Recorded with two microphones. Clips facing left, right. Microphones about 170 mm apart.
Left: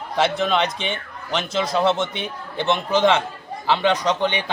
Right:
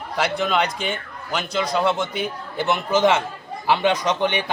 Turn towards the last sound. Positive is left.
turn(degrees=-15)  # may be behind; listen again after turning